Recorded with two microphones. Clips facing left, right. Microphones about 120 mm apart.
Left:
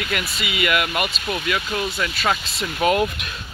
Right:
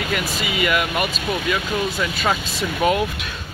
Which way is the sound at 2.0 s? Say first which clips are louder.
Right 1 dB; centre (ahead or behind).